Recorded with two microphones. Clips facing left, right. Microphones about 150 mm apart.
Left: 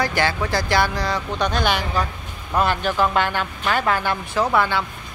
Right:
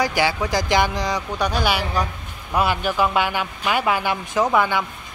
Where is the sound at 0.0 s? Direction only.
10° right (ahead or behind).